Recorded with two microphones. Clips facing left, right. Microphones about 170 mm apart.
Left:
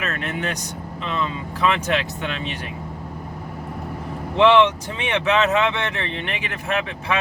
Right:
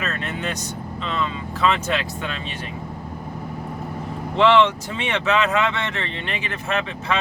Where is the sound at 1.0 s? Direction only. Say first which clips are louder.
Even; 15° left (ahead or behind).